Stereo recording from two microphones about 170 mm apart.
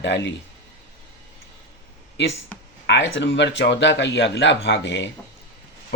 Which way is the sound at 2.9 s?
90° left.